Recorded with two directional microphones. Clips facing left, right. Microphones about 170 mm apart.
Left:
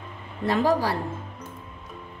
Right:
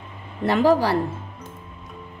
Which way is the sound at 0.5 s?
75° right (ahead or behind).